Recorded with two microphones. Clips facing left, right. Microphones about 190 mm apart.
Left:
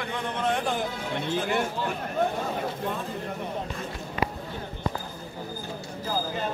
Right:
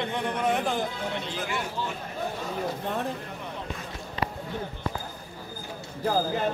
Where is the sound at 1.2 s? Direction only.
55° left (ahead or behind).